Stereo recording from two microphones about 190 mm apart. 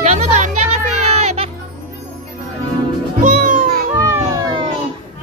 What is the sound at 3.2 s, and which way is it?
Music, 40° right (ahead or behind).